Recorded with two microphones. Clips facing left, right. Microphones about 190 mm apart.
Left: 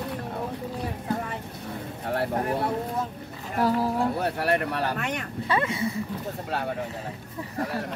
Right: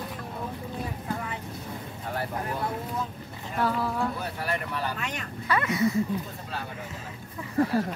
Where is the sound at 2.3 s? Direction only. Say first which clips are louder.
Left 5 dB; 35° left (ahead or behind).